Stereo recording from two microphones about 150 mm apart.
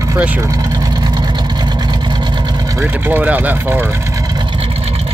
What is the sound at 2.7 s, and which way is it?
Speech, 15° right (ahead or behind).